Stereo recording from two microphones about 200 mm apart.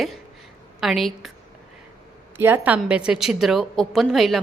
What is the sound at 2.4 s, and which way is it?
A woman's voice, 10° right (ahead or behind).